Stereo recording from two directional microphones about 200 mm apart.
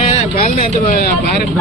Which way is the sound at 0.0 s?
30° left (ahead or behind).